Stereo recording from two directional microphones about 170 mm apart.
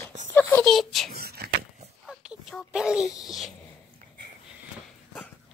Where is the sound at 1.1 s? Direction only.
65° right (ahead or behind).